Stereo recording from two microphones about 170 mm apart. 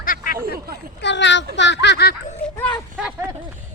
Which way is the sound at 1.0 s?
90° left.